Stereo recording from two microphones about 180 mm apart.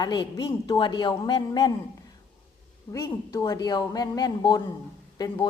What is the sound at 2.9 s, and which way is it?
A woman's voice, 20° left (ahead or behind).